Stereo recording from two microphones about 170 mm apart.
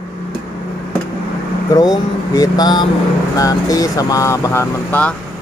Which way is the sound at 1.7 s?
20° left (ahead or behind).